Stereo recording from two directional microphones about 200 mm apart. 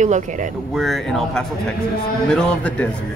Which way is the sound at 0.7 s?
Centre (ahead or behind).